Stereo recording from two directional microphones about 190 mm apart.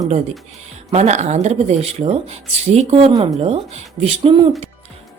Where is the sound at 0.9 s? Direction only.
35° right (ahead or behind).